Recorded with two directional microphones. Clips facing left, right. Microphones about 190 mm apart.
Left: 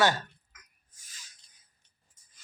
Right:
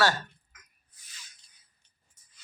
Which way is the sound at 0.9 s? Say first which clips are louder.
Right 2 dB; 45° left (ahead or behind).